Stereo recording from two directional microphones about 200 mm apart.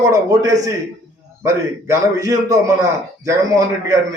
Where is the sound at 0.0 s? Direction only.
15° right (ahead or behind).